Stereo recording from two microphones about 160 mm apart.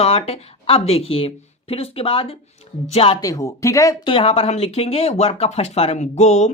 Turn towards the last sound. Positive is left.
turn(degrees=45)  # may be behind; listen again after turning